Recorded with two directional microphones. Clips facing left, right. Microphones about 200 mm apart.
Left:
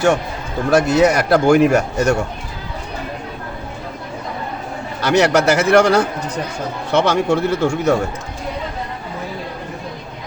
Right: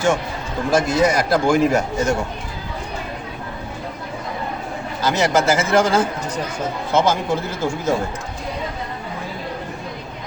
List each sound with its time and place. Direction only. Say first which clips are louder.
0.7 s a man's voice: left 4 dB; 65° left (ahead or behind)
4.9 s speech: left 4 dB; 70° left (ahead or behind)